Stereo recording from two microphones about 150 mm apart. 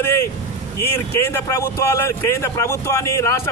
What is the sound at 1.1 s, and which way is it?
Speech, 20° left (ahead or behind).